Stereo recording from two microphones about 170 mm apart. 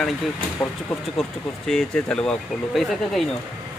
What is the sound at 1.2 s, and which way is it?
Speech, 5° left (ahead or behind).